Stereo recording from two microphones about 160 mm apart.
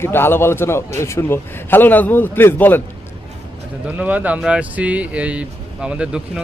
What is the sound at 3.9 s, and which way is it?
Speech, 10° right (ahead or behind).